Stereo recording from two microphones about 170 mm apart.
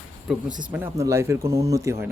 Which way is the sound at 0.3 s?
5° right (ahead or behind).